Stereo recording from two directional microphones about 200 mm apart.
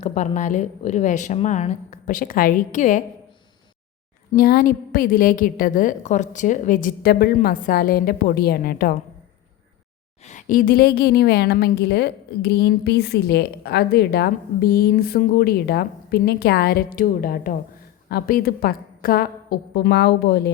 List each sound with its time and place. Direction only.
0.0 s a woman's voice: 35° left (ahead or behind)
4.4 s a woman's voice: 45° left (ahead or behind)
10.2 s a woman's voice: 40° left (ahead or behind); by 20.5 s 55° left (ahead or behind)